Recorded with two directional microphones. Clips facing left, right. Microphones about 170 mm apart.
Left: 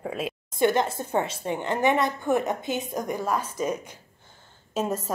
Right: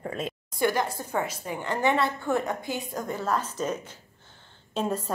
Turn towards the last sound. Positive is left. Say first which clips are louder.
# left 1 dB
turn(degrees=10)  # may be behind; listen again after turning